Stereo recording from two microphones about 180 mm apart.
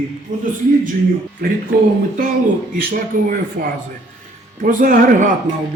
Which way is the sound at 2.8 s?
50° right (ahead or behind).